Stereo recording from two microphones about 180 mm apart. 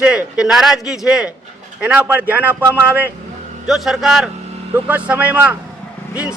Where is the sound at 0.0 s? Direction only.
5° right (ahead or behind).